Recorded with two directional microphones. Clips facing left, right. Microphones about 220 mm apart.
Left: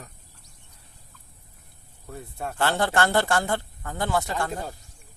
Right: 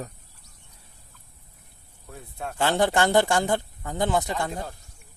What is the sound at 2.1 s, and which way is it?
Speech, centre (ahead or behind).